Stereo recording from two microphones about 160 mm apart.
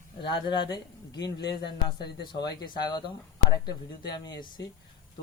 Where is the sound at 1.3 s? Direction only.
90° left.